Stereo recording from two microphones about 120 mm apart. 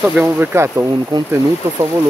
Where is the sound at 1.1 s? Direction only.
35° right (ahead or behind).